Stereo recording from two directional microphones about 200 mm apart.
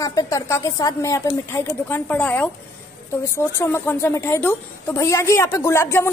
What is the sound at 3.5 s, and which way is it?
A woman's voice, 10° left (ahead or behind).